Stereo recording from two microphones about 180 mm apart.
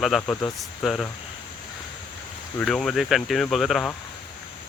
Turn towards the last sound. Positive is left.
turn(degrees=0)  # may be behind; listen again after turning